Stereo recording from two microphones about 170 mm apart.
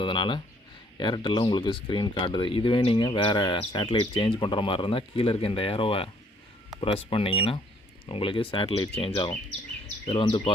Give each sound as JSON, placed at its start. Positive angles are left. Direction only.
{"t": 0.0, "sound": "speech", "side_deg": 30}